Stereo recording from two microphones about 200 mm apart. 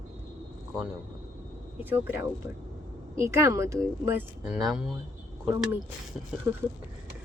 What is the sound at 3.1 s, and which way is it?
A woman's voice, 15° right (ahead or behind).